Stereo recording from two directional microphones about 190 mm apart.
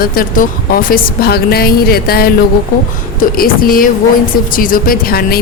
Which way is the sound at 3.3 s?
50° left (ahead or behind).